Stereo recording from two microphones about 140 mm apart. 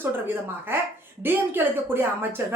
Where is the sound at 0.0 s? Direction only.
15° right (ahead or behind).